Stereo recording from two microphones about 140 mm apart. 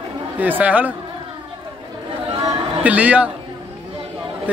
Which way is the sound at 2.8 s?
10° right (ahead or behind).